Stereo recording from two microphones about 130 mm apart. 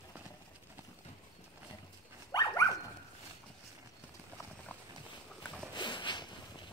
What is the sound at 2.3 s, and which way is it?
Dog, 25° left (ahead or behind).